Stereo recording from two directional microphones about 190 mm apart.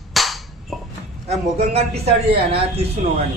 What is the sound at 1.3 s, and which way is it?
Speech, 35° right (ahead or behind).